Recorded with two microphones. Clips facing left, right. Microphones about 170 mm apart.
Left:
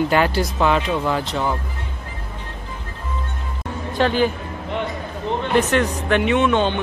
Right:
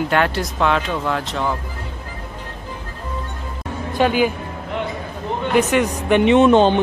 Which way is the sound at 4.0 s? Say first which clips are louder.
Right 1 dB; 10° right (ahead or behind).